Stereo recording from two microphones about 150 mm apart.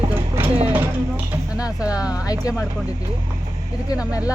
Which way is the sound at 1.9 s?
25° left (ahead or behind).